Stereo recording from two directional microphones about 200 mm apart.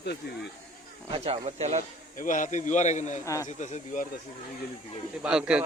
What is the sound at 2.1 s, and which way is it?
Speech, 40° left (ahead or behind).